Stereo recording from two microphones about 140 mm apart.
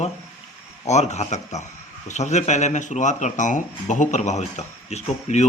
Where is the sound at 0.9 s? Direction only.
55° left (ahead or behind).